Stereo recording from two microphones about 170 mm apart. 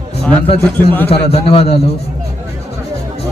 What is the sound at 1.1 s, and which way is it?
Speech, 35° left (ahead or behind).